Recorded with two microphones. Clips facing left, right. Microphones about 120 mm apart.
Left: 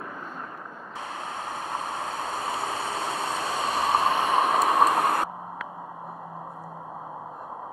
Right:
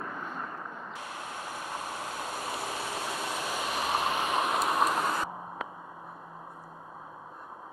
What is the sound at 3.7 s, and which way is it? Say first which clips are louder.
Vehicle: left 7 dB; 30° left (ahead or behind).